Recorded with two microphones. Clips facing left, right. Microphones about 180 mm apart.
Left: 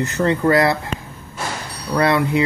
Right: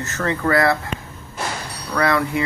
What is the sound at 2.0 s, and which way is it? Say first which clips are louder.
Speech: left 3 dB; 20° left (ahead or behind).